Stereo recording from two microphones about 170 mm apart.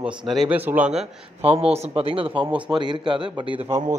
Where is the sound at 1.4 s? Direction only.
35° right (ahead or behind).